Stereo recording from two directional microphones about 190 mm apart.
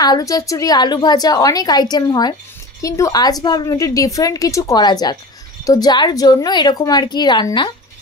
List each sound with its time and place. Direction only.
0.0 s a woman's voice: 20° left (ahead or behind)